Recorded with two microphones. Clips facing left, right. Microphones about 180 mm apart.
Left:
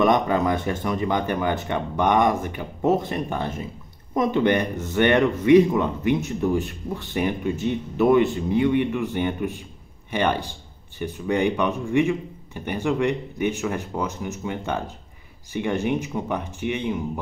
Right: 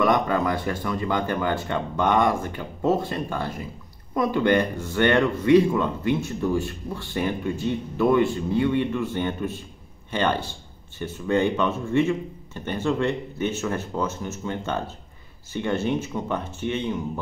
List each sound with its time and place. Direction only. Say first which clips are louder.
0.0 s speech: left 2 dB; 20° left (ahead or behind)